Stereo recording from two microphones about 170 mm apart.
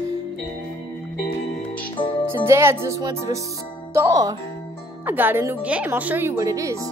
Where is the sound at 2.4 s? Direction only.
15° right (ahead or behind).